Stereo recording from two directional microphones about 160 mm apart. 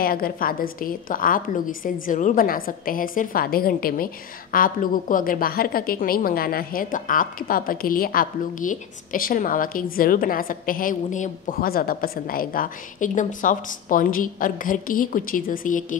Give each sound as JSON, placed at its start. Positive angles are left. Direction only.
{"t": 0.0, "sound": "a woman's voice", "side_deg": 65}